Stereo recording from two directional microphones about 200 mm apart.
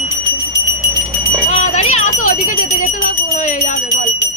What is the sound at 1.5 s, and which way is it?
Jingle bell, 35° left (ahead or behind).